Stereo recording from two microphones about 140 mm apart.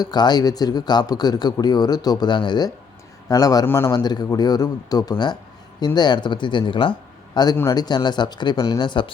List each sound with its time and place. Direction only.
0.0 s speech: 30° left (ahead or behind)
3.9 s speech: 30° left (ahead or behind)
7.5 s speech: 20° left (ahead or behind)
7.8 s speech: 30° left (ahead or behind)